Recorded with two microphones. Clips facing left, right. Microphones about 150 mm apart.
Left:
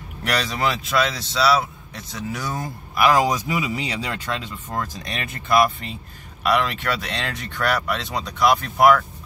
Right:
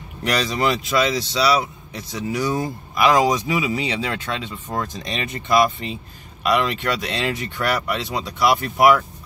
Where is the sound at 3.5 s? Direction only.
10° right (ahead or behind).